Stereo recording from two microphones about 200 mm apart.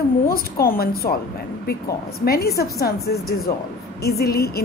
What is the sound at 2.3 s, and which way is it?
Speech, 50° left (ahead or behind).